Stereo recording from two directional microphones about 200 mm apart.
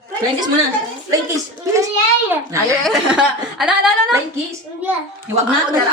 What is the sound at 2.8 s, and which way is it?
Speech, centre (ahead or behind).